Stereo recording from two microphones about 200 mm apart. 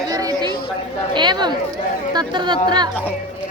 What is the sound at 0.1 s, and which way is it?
Chatter, 15° right (ahead or behind).